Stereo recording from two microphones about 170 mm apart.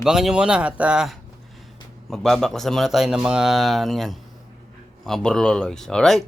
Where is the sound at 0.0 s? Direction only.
5° right (ahead or behind).